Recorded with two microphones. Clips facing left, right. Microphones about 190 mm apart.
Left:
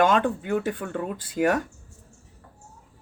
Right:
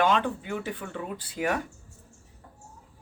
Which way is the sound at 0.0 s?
50° left (ahead or behind).